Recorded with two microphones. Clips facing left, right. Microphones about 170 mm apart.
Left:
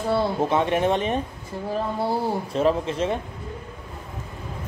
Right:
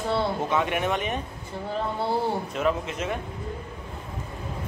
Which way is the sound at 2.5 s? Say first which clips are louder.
Left 4 dB; 30° left (ahead or behind).